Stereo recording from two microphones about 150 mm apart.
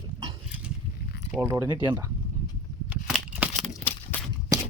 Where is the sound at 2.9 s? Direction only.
5° right (ahead or behind).